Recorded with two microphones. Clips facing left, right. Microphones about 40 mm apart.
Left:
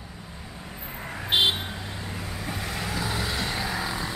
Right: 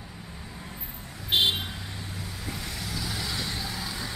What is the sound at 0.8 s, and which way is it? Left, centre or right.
Vehicle, left.